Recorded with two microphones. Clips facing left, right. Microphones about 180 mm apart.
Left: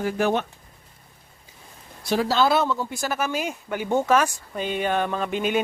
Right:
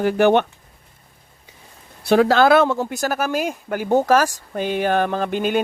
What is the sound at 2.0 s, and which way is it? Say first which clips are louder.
A man's voice: right 7 dB; 60° right (ahead or behind).